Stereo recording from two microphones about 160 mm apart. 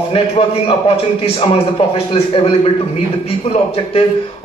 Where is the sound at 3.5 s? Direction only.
35° left (ahead or behind).